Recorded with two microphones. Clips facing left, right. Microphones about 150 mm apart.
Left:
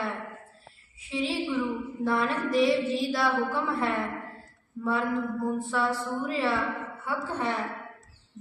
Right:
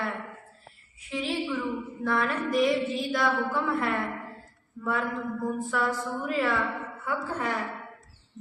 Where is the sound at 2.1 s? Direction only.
30° left (ahead or behind).